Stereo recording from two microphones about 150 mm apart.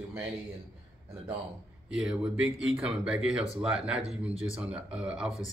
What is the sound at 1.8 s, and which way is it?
Speech, 5° right (ahead or behind).